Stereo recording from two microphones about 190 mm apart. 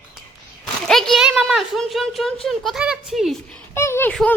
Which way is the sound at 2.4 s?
Centre (ahead or behind).